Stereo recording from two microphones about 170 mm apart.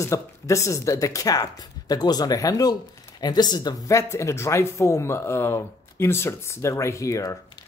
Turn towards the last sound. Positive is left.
turn(degrees=20)  # may be behind; listen again after turning